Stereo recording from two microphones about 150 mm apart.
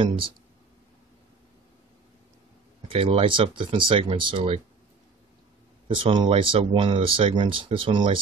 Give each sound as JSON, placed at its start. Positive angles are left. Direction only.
{"t": 0.0, "sound": "speech", "side_deg": -35}
{"t": 2.9, "sound": "speech", "side_deg": -40}
{"t": 5.9, "sound": "speech", "side_deg": -35}